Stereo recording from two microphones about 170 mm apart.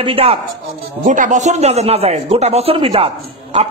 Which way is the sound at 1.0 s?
45° right (ahead or behind).